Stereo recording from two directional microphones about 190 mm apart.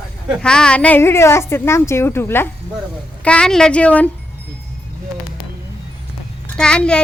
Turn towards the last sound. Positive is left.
turn(degrees=5)  # may be behind; listen again after turning